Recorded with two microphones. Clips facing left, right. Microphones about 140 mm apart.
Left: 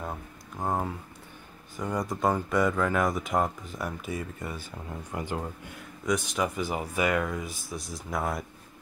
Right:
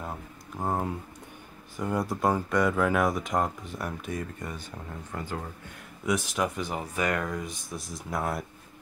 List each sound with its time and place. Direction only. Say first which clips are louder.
0.6 s speech: even; 5° right (ahead or behind)
5.1 s speech: left 2 dB; 15° left (ahead or behind)
6.0 s speech: even; centre (ahead or behind)